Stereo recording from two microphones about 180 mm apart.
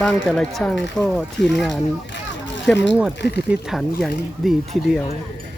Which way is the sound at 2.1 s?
80° left.